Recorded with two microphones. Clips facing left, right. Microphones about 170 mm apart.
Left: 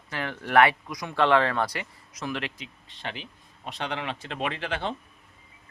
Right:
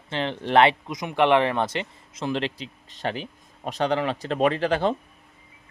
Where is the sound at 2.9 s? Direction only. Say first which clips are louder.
Right 8 dB; 45° right (ahead or behind).